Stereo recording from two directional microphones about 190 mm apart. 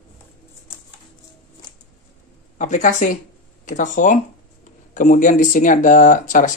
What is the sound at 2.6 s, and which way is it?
Speech, 40° left (ahead or behind).